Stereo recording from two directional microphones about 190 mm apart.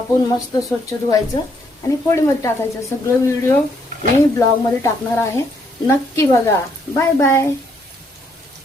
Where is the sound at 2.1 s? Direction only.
15° left (ahead or behind).